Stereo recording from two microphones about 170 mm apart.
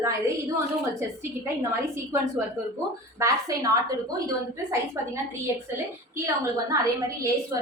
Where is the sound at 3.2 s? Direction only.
20° right (ahead or behind).